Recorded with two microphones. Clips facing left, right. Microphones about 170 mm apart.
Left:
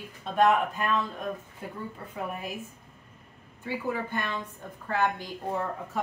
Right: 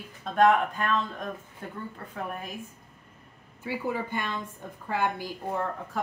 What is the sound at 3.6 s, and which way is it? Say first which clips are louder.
A woman's voice: right 1 dB; 10° right (ahead or behind).